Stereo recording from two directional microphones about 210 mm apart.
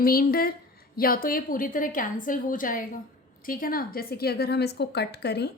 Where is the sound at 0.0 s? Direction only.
45° left (ahead or behind).